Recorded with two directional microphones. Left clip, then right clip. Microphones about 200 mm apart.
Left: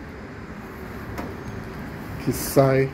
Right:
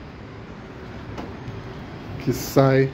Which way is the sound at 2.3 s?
15° right (ahead or behind).